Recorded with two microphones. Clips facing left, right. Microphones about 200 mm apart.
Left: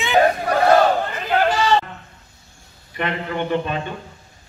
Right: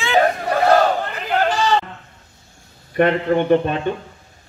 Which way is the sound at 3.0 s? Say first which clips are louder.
Right 8 dB; 50° right (ahead or behind).